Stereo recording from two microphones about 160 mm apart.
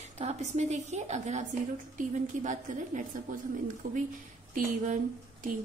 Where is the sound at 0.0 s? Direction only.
45° right (ahead or behind).